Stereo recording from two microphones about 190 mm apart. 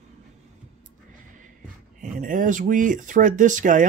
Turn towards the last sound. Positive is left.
turn(degrees=-40)  # may be behind; listen again after turning